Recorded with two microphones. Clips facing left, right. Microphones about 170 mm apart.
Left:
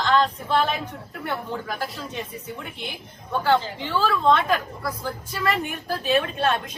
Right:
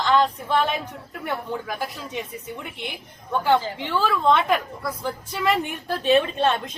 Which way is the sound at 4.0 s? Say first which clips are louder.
Even; 15° right (ahead or behind).